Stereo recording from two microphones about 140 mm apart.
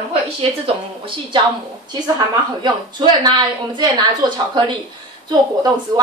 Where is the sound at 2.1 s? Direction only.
30° right (ahead or behind).